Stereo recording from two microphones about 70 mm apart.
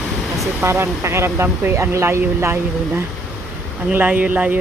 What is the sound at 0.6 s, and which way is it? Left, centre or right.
Speech, right.